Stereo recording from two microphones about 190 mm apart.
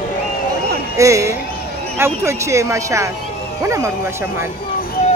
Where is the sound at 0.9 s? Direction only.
15° right (ahead or behind).